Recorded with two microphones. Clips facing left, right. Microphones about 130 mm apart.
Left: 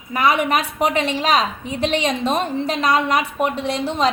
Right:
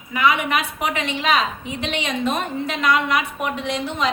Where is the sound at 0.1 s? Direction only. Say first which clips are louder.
Left 2 dB; 40° left (ahead or behind).